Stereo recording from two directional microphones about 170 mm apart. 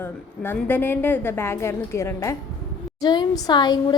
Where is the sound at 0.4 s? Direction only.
10° left (ahead or behind).